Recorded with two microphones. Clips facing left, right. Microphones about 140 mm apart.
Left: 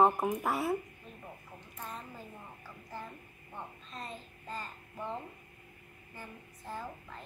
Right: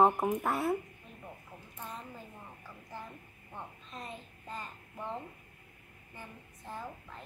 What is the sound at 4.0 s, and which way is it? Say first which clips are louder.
Child singing: left 1 dB; 15° right (ahead or behind).